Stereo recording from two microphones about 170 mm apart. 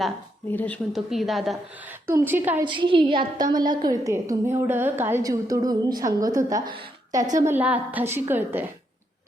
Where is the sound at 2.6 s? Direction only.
30° right (ahead or behind).